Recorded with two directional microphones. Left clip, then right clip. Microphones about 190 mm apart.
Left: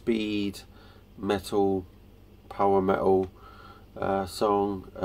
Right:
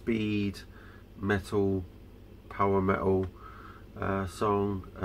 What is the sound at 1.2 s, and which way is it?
Speech, 20° left (ahead or behind).